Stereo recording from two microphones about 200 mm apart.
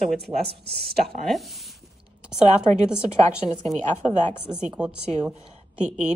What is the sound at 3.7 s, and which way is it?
Speech, 35° right (ahead or behind).